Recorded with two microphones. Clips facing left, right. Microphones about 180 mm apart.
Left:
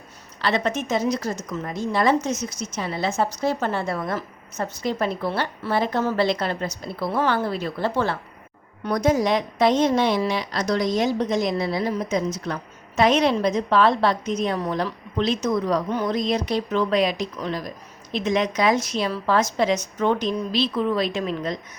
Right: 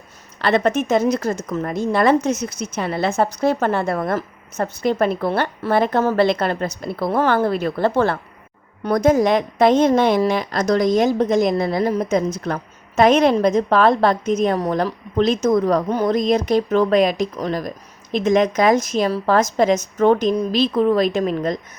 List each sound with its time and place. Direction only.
0.4 s a woman's voice: 55° right (ahead or behind)